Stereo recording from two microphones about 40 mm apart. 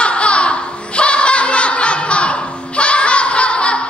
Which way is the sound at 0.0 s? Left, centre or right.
Left.